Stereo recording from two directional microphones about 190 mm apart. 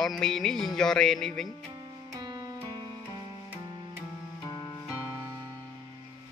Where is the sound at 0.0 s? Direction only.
Centre (ahead or behind).